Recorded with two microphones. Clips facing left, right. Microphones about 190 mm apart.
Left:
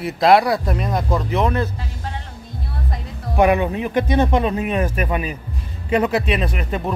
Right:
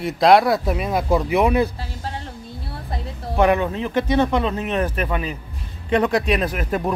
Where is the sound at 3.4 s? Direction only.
15° left (ahead or behind).